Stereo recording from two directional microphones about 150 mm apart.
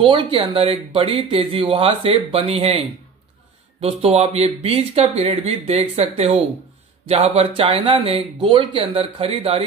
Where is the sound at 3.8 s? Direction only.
40° right (ahead or behind).